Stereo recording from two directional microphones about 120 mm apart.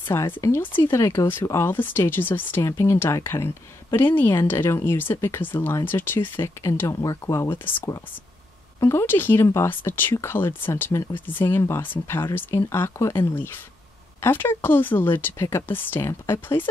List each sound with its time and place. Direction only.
0.1 s speech: 25° left (ahead or behind)